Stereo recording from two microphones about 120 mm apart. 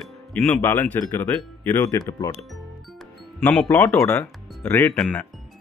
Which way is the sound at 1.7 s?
30° left (ahead or behind).